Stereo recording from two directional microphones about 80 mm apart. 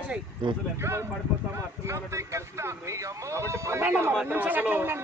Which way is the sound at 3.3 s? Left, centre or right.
Right.